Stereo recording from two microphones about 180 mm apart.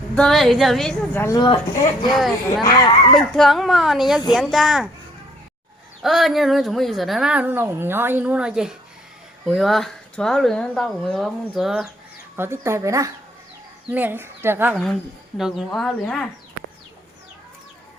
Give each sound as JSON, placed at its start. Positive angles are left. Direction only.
{"t": 0.2, "sound": "speech", "side_deg": 0}
{"t": 1.2, "sound": "speech", "side_deg": 20}
{"t": 2.0, "sound": "speech", "side_deg": 0}
{"t": 2.6, "sound": "speech", "side_deg": 20}
{"t": 3.2, "sound": "speech", "side_deg": 0}
{"t": 6.0, "sound": "speech", "side_deg": 0}
{"t": 12.4, "sound": "speech", "side_deg": -15}